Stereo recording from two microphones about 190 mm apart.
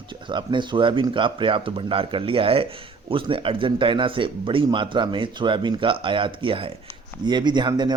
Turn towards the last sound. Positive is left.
turn(degrees=-20)  # may be behind; listen again after turning